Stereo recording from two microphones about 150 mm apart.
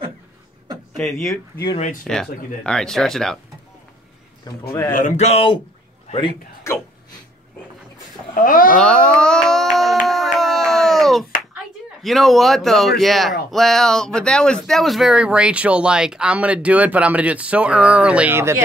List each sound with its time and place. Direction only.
0.9 s speech: centre (ahead or behind)
4.5 s a man's voice: 25° left (ahead or behind)
4.9 s speech: 55° left (ahead or behind)
6.1 s a man's voice: 20° left (ahead or behind)
8.4 s speech: 65° left (ahead or behind)
8.7 s a sound: 5° left (ahead or behind)
11.5 s speech: centre (ahead or behind); by 18.6 s 15° right (ahead or behind)